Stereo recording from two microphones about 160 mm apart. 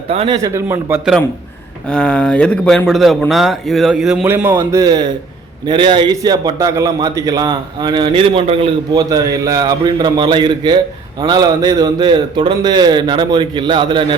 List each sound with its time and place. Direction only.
0.1 s a man's voice: 40° right (ahead or behind)
0.4 s a man's voice: 15° right (ahead or behind)
1.9 s a man's voice: 5° left (ahead or behind); by 8.7 s 35° right (ahead or behind)
8.9 s a man's voice: 25° right (ahead or behind)